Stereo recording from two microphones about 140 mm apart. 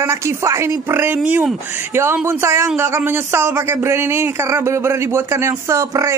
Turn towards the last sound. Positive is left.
turn(degrees=-20)  # may be behind; listen again after turning